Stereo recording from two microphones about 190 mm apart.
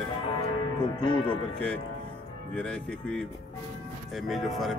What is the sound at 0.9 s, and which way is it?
Speech, 25° left (ahead or behind).